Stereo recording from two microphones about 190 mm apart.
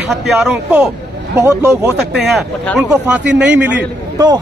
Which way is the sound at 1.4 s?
15° right (ahead or behind).